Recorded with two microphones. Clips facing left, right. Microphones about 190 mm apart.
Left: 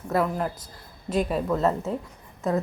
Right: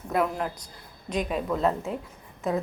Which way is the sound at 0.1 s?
Centre (ahead or behind).